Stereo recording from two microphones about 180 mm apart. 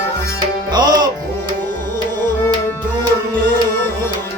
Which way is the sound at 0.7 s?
25° right (ahead or behind).